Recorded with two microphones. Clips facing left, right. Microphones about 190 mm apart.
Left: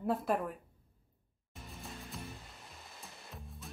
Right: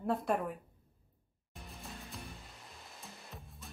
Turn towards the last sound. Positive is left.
turn(degrees=0)  # may be behind; listen again after turning